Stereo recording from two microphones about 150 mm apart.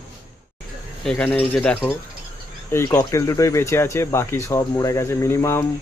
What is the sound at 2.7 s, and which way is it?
Speech, 20° left (ahead or behind).